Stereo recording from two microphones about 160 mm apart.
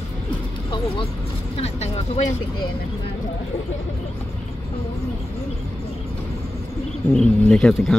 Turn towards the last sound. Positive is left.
turn(degrees=5)  # may be behind; listen again after turning